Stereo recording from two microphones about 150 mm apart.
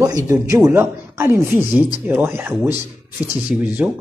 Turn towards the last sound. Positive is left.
turn(degrees=-10)  # may be behind; listen again after turning